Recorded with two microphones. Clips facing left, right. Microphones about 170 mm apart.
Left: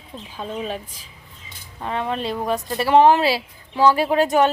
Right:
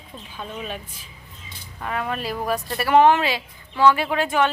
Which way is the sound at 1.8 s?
25° left (ahead or behind).